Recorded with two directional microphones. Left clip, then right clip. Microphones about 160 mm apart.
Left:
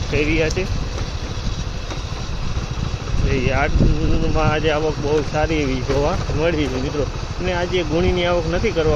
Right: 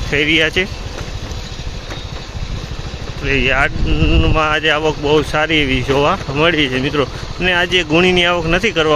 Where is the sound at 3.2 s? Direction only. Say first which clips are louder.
Right 6 dB; 15° right (ahead or behind).